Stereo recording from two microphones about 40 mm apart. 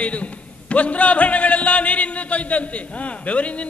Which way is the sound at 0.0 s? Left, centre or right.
Left.